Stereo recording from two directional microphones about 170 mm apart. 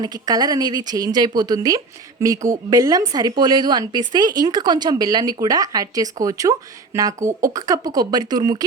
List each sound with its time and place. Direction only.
0.0 s a woman's voice: 25° right (ahead or behind)